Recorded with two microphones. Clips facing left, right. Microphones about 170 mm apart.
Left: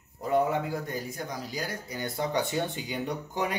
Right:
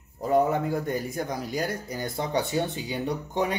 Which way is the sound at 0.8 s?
60° right (ahead or behind).